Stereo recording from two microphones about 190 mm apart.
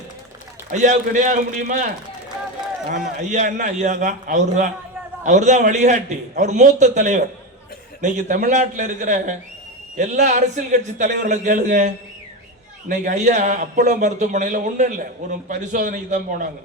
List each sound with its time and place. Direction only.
0.7 s a man's voice: 40° right (ahead or behind)
2.9 s a man's voice: 40° right (ahead or behind)
12.9 s a man's voice: 40° right (ahead or behind)